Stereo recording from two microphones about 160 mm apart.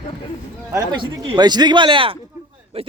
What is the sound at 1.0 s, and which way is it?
Speech, 30° right (ahead or behind).